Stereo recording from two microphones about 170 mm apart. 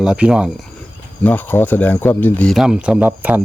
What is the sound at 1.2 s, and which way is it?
Speech, 10° left (ahead or behind).